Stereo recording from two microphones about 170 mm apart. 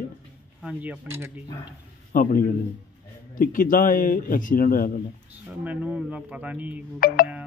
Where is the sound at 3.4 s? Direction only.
55° left (ahead or behind).